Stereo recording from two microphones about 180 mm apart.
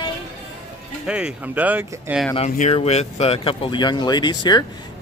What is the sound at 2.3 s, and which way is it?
Speech, 35° left (ahead or behind).